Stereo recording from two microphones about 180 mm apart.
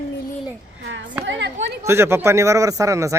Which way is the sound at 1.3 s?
80° right.